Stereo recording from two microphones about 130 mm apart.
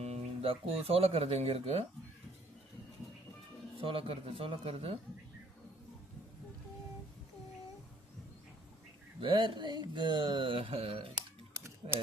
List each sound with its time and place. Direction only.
0.0 s speech: 50° right (ahead or behind)
3.8 s speech: 45° right (ahead or behind)
9.2 s speech: 40° right (ahead or behind)